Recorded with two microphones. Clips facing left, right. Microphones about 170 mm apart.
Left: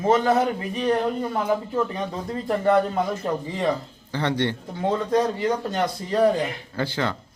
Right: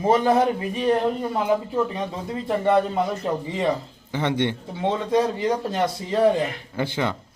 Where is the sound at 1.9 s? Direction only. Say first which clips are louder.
Even; 5° right (ahead or behind).